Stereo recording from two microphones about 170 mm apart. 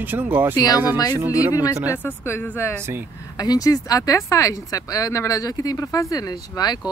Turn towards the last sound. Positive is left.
turn(degrees=25)  # may be behind; listen again after turning